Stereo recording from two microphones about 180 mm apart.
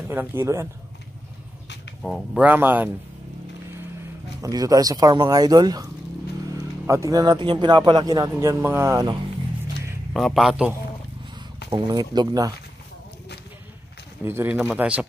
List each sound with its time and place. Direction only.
0.1 s speech: 10° right (ahead or behind)
2.0 s a man's voice: centre (ahead or behind)
2.4 s speech: 10° right (ahead or behind)
4.4 s speech: 20° right (ahead or behind)
10.1 s a man's voice: centre (ahead or behind)
11.7 s speech: 20° right (ahead or behind)
14.2 s speech: 10° right (ahead or behind)